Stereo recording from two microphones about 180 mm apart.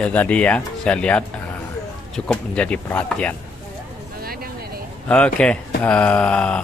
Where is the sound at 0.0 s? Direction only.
10° left (ahead or behind).